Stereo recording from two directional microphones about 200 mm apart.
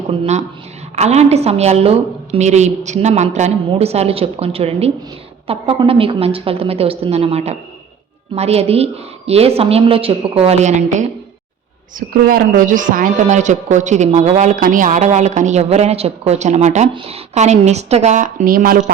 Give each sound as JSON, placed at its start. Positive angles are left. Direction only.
{"t": 0.1, "sound": "a woman's voice", "side_deg": -35}
{"t": 11.9, "sound": "speech", "side_deg": -50}